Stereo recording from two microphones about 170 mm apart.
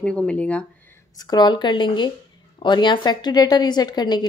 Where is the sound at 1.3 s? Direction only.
25° left (ahead or behind).